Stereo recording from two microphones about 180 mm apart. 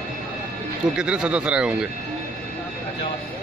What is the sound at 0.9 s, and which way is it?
Speech, 5° right (ahead or behind).